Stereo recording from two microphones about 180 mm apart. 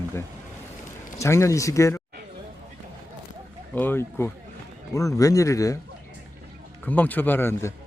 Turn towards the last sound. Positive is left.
turn(degrees=15)  # may be behind; listen again after turning